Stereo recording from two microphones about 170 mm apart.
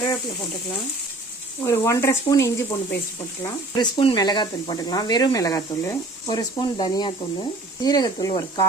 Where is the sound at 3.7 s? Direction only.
30° left (ahead or behind).